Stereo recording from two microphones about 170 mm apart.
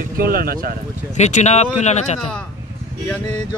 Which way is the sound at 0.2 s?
60° right (ahead or behind).